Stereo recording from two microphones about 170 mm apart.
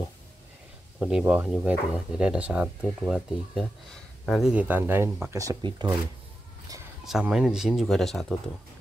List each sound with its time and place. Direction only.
0.9 s speech: 10° right (ahead or behind); by 5.9 s 25° right (ahead or behind)
7.1 s speech: 5° right (ahead or behind)